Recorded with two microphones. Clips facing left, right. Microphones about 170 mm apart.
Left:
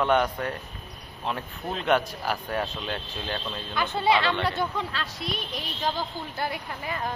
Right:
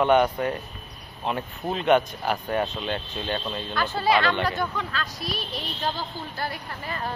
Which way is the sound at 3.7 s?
20° left (ahead or behind).